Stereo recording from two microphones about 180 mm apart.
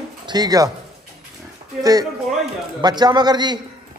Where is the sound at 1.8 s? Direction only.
20° right (ahead or behind).